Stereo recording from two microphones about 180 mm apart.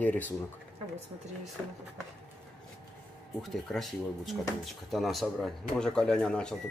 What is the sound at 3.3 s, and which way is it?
Speech, centre (ahead or behind).